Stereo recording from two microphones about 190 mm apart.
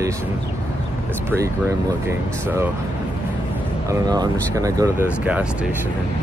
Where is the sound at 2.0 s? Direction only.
10° right (ahead or behind).